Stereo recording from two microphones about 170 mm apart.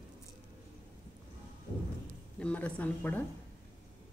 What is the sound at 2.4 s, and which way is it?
Speech, 10° left (ahead or behind).